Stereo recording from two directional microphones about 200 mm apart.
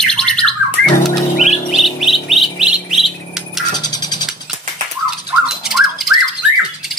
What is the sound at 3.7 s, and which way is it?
Music, 20° left (ahead or behind).